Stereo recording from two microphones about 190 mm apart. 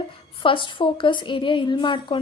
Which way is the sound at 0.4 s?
25° left (ahead or behind).